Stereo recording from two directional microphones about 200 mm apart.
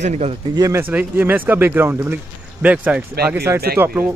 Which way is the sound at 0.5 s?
15° right (ahead or behind).